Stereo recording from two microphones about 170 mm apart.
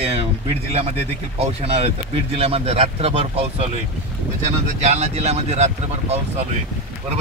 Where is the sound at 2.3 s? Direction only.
35° right (ahead or behind).